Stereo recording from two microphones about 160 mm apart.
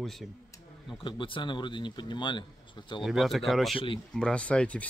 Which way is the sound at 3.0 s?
Centre (ahead or behind).